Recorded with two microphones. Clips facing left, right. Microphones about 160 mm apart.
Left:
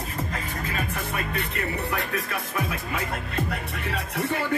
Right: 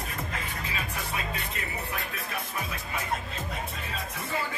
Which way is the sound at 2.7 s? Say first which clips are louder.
Left 3 dB; 70° left (ahead or behind).